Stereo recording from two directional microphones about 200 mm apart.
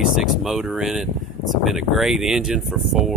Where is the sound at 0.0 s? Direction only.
Centre (ahead or behind).